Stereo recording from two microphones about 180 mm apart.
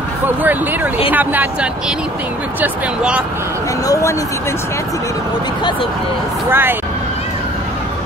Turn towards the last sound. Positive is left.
turn(degrees=-10)  # may be behind; listen again after turning